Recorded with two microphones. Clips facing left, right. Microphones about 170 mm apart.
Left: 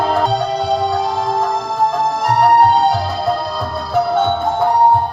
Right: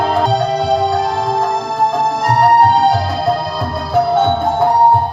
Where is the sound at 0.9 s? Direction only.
Centre (ahead or behind).